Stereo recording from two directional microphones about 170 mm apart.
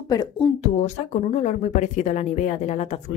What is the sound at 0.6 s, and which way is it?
A woman's voice, 40° left (ahead or behind).